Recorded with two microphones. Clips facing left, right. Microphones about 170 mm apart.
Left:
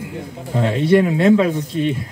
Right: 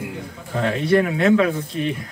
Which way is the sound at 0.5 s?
25° left (ahead or behind).